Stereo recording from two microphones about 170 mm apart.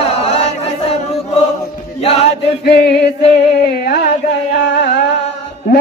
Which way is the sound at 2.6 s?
75° left (ahead or behind).